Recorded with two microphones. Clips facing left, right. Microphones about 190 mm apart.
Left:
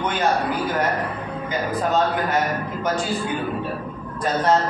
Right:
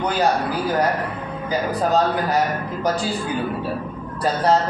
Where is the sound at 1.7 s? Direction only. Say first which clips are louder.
Right 1 dB; 35° right (ahead or behind).